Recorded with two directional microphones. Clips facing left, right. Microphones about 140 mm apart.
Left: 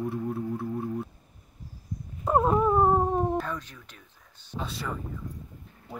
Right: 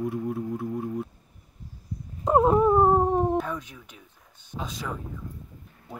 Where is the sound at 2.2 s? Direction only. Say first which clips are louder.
Right 3 dB; 15° right (ahead or behind).